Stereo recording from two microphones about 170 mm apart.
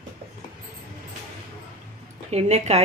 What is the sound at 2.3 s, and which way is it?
Speech, 40° right (ahead or behind).